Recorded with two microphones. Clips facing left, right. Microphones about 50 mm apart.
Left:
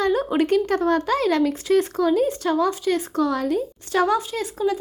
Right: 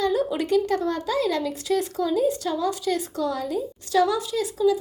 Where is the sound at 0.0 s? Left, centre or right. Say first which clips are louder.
Left 3 dB; left.